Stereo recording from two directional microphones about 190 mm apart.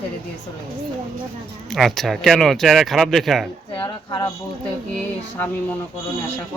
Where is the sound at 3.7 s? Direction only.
25° left (ahead or behind).